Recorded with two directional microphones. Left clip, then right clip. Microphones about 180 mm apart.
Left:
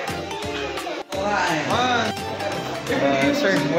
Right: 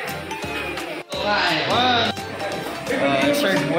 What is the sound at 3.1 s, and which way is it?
Speech, 10° left (ahead or behind).